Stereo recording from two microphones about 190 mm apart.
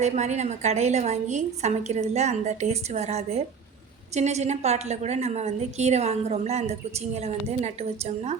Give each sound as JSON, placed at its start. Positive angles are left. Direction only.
{"t": 0.0, "sound": "a woman's voice", "side_deg": -35}